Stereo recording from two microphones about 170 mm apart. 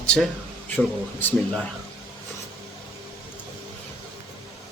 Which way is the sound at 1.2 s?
10° left (ahead or behind).